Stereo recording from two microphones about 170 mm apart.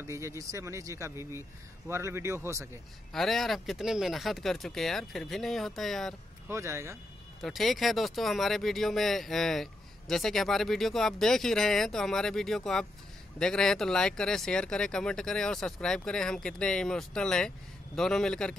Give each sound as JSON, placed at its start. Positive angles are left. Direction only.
{"t": 0.0, "sound": "speech", "side_deg": -15}
{"t": 3.1, "sound": "speech", "side_deg": 0}
{"t": 6.5, "sound": "speech", "side_deg": -15}
{"t": 7.4, "sound": "speech", "side_deg": 0}